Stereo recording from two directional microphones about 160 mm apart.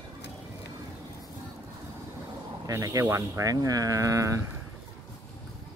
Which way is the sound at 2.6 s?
20° right (ahead or behind).